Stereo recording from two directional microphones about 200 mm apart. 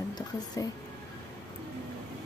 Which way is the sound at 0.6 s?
15° left (ahead or behind).